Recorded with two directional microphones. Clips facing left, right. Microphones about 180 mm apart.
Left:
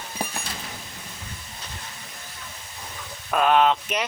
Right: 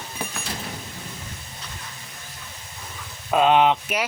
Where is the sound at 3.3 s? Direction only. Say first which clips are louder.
Right 2 dB; 20° right (ahead or behind).